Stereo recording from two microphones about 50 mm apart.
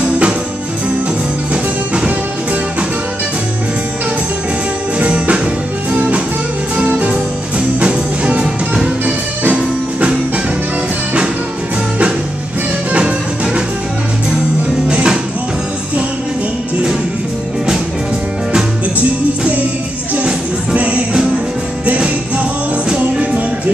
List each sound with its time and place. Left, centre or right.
4.9 s music: right
7.1 s music: right
14.9 s music: centre
20.2 s music: right